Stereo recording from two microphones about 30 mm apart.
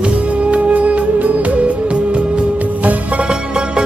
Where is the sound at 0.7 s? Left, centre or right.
Right.